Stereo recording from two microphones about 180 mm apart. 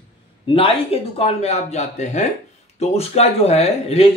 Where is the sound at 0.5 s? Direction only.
30° left (ahead or behind).